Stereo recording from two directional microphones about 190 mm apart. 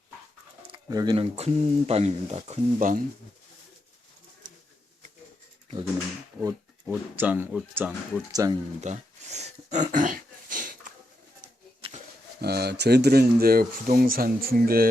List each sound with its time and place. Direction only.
0.7 s speech: 20° right (ahead or behind); by 3.0 s 40° right (ahead or behind)
6.8 s speech: 10° right (ahead or behind)
8.8 s a sound: 40° right (ahead or behind)
12.4 s speech: 55° right (ahead or behind)